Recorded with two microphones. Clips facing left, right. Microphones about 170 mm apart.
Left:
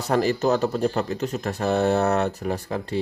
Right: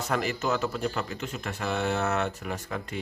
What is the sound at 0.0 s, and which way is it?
Speech, 35° left (ahead or behind).